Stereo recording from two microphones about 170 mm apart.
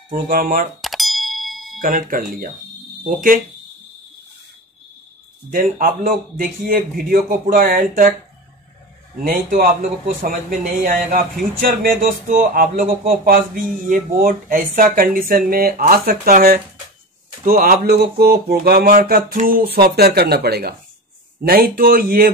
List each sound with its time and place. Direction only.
0.1 s speech: 55° right (ahead or behind)
0.7 s a sound: centre (ahead or behind)
1.8 s speech: 55° right (ahead or behind)
5.5 s speech: 55° right (ahead or behind)
9.3 s speech: 55° right (ahead or behind)